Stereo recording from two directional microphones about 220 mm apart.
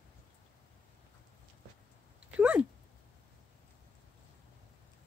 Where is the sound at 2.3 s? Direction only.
5° right (ahead or behind).